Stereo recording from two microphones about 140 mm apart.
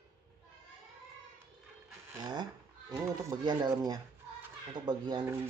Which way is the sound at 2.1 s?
30° right (ahead or behind).